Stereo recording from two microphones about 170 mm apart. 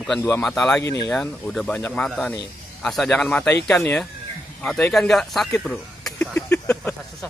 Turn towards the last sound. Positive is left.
turn(degrees=15)  # may be behind; listen again after turning